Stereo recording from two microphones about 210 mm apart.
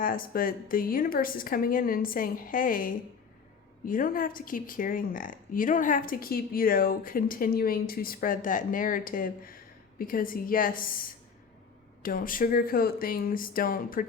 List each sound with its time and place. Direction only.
0.0 s speech: 40° left (ahead or behind)